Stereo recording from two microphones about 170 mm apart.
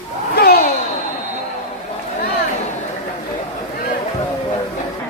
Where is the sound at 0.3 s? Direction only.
65° left (ahead or behind).